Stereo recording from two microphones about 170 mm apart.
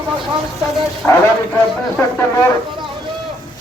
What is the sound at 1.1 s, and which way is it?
Speech, 15° left (ahead or behind).